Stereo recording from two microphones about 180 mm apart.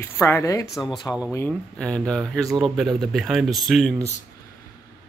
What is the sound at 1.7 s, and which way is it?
Speech, 5° left (ahead or behind).